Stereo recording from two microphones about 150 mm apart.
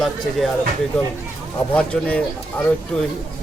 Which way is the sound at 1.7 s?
5° left (ahead or behind).